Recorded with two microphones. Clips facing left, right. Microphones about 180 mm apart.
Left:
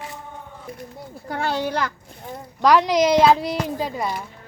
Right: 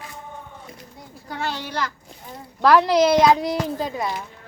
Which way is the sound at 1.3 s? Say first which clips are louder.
Left 3 dB; 50° left (ahead or behind).